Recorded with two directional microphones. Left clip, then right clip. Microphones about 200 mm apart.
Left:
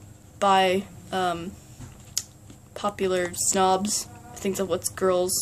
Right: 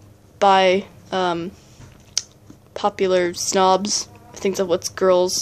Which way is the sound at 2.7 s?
30° right (ahead or behind).